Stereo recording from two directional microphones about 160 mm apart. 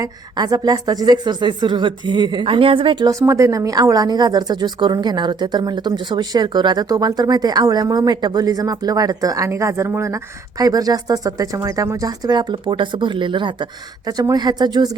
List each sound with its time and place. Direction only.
0.0 s a woman's voice: 25° right (ahead or behind)